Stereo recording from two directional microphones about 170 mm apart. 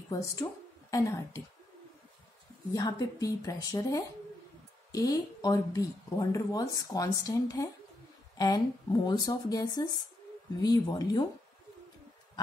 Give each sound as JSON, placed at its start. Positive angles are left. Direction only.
{"t": 0.1, "sound": "a woman's voice", "side_deg": 20}
{"t": 2.7, "sound": "speech", "side_deg": 20}